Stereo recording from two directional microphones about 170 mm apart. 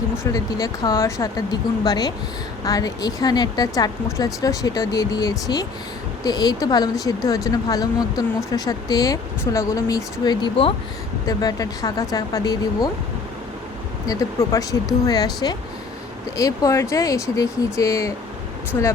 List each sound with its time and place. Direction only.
0.3 s speech: 20° left (ahead or behind)
14.1 s speech: 20° left (ahead or behind)